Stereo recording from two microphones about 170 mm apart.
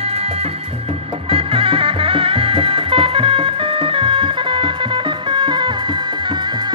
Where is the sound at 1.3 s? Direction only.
35° right (ahead or behind).